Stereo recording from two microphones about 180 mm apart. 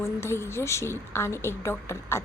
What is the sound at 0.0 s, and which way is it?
Speech, 15° left (ahead or behind).